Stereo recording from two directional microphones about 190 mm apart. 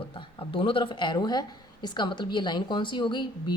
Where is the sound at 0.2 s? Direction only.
25° left (ahead or behind).